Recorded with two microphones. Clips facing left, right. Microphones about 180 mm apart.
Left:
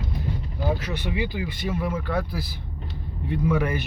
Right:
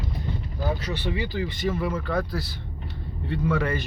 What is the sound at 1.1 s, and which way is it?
Speech, 15° left (ahead or behind).